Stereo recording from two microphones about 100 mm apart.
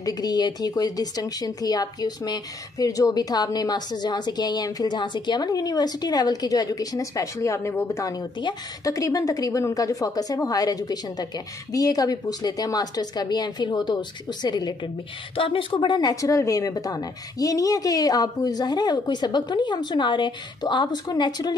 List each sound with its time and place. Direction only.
0.0 s speech: 40° left (ahead or behind)
15.3 s speech: 65° left (ahead or behind); by 21.5 s 40° left (ahead or behind)